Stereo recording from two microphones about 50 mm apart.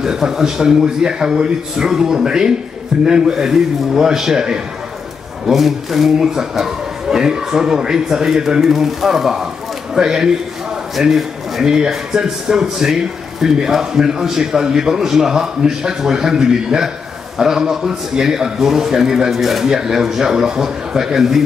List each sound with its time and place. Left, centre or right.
0.0 s a man's voice: centre
11.6 s speech: centre